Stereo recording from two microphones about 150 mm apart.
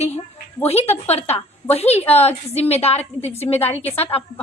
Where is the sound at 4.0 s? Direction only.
40° left (ahead or behind).